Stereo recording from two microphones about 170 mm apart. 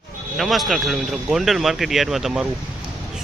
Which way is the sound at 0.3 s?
Centre (ahead or behind).